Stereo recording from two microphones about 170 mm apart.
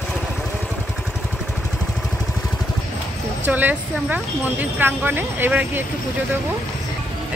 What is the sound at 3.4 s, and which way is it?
Speech, 10° right (ahead or behind).